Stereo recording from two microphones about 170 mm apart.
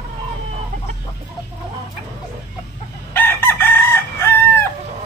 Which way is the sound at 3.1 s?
15° left (ahead or behind).